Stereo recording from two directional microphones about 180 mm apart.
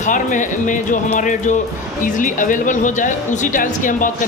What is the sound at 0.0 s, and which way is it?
A woman's voice, 45° left (ahead or behind).